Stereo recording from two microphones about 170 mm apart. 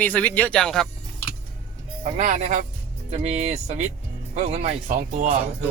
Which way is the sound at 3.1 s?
40° right (ahead or behind).